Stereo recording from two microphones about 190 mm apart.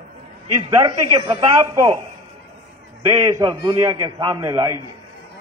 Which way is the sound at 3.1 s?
15° right (ahead or behind).